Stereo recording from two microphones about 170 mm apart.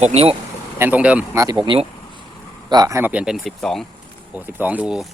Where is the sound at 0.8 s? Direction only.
10° right (ahead or behind).